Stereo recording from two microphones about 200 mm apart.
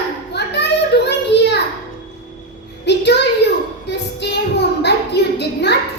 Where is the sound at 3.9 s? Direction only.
55° left (ahead or behind).